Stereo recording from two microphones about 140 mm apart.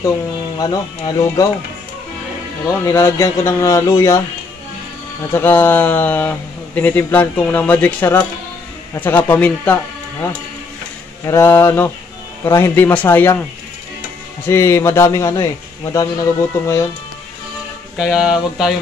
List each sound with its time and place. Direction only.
0.6 s a man's voice: 30° left (ahead or behind)
2.9 s a man's voice: 20° left (ahead or behind)
5.3 s a man's voice: 15° left (ahead or behind)
11.2 s a man's voice: 20° left (ahead or behind)
14.5 s a man's voice: 20° left (ahead or behind)
17.9 s speech: 5° right (ahead or behind)